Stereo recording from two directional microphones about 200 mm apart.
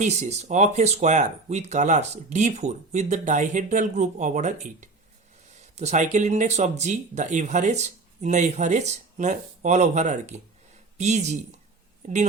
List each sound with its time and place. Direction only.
0.0 s speech: 35° right (ahead or behind)